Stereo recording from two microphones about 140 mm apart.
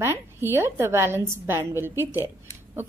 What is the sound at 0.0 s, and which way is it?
A woman's voice, 15° right (ahead or behind).